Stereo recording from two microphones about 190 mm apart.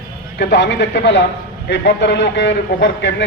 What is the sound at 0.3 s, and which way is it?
A man's voice, 65° left (ahead or behind).